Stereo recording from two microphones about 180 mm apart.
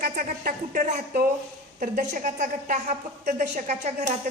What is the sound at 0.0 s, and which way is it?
A woman's voice, 50° right (ahead or behind).